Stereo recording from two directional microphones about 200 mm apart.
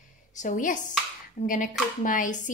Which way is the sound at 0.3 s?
40° left (ahead or behind).